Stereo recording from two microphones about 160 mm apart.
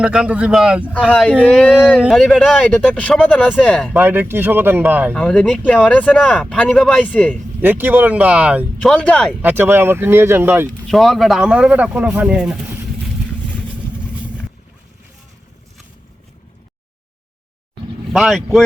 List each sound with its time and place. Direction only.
0.0 s speech: 5° right (ahead or behind)
3.9 s speech: 15° right (ahead or behind)
5.1 s speech: 5° left (ahead or behind)
7.6 s speech: 10° right (ahead or behind)
8.8 s speech: 5° left (ahead or behind)
9.4 s speech: 10° right (ahead or behind)
10.8 s speech: centre (ahead or behind)
18.1 s speech: centre (ahead or behind)